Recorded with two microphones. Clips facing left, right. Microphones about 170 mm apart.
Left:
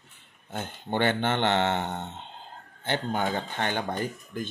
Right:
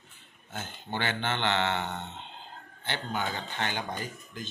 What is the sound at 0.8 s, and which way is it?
Speech, 50° left (ahead or behind).